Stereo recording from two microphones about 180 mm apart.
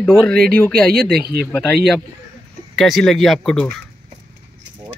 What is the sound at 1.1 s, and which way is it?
Speech, 60° right (ahead or behind).